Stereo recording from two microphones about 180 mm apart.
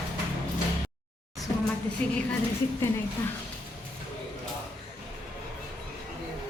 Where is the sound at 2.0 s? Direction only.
5° left (ahead or behind).